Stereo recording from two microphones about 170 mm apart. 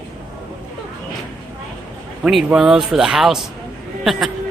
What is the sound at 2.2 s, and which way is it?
Speech, 5° right (ahead or behind).